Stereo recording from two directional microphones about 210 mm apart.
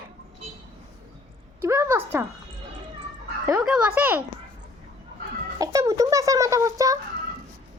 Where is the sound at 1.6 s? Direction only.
15° right (ahead or behind).